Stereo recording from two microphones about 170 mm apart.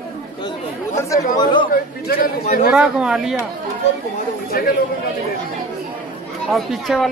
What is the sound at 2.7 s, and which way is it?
Speech, 5° right (ahead or behind).